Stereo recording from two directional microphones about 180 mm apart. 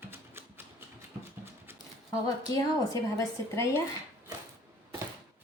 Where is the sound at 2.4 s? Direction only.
20° left (ahead or behind).